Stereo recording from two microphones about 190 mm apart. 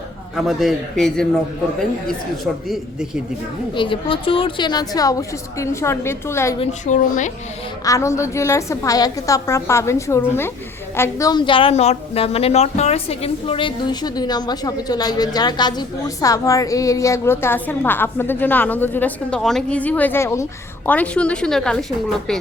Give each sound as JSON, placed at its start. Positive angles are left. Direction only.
{"t": 0.3, "sound": "speech", "side_deg": 0}
{"t": 3.8, "sound": "a woman's voice", "side_deg": 25}
{"t": 6.6, "sound": "speech", "side_deg": 40}
{"t": 7.9, "sound": "a woman's voice", "side_deg": 15}